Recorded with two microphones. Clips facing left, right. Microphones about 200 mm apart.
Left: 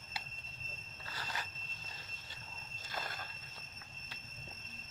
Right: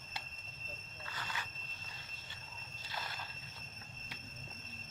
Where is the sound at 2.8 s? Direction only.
50° left (ahead or behind).